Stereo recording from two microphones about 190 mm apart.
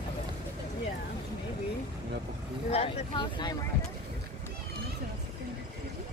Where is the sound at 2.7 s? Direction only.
25° left (ahead or behind).